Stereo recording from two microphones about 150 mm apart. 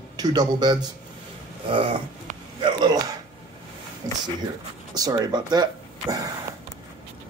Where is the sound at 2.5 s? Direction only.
30° right (ahead or behind).